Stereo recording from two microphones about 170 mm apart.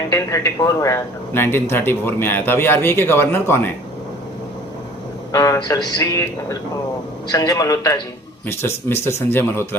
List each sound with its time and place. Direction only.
0.1 s speech: 20° left (ahead or behind)
5.3 s speech: 20° left (ahead or behind)